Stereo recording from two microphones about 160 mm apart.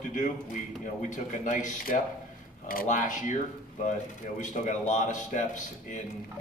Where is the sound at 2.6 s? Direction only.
65° left (ahead or behind).